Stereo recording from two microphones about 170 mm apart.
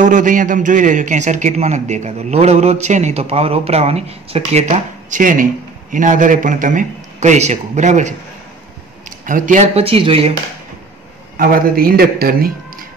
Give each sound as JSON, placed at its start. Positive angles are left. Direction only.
{"t": 0.0, "sound": "a man's voice", "side_deg": -50}
{"t": 9.2, "sound": "speech", "side_deg": -50}
{"t": 11.3, "sound": "a man's voice", "side_deg": -60}